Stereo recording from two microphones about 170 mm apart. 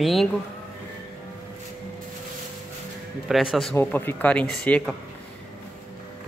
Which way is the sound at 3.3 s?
Centre (ahead or behind).